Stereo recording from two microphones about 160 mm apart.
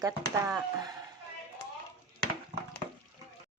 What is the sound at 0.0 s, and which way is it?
Speech, 20° right (ahead or behind).